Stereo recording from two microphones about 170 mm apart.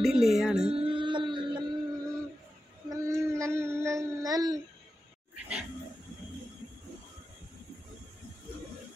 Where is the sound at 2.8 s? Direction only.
20° right (ahead or behind).